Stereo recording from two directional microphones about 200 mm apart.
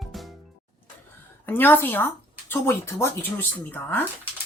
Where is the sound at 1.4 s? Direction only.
10° left (ahead or behind).